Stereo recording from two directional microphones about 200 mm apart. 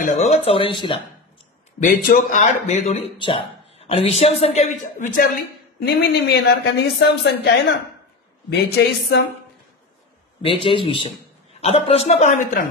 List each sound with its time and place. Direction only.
0.0 s speech: 35° left (ahead or behind)
1.8 s speech: 40° left (ahead or behind)
5.8 s speech: 55° left (ahead or behind)
10.4 s speech: 25° left (ahead or behind)